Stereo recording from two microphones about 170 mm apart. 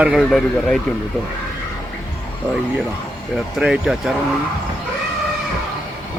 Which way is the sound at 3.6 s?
5° right (ahead or behind).